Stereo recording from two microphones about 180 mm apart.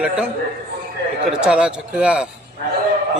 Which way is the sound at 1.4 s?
5° right (ahead or behind).